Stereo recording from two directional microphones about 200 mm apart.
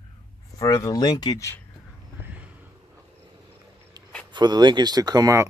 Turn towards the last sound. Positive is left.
turn(degrees=-15)  # may be behind; listen again after turning